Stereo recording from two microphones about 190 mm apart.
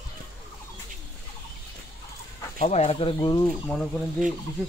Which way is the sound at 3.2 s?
20° left (ahead or behind).